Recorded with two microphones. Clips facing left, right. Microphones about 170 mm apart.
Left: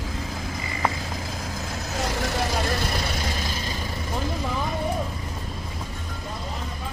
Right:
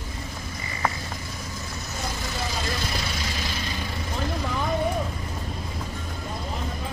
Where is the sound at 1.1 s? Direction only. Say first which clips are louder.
Left 4 dB; 90° left; by 2.9 s 60° left (ahead or behind).